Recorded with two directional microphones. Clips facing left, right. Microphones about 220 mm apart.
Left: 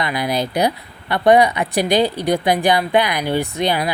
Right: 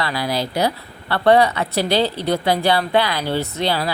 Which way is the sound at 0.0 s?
20° left (ahead or behind).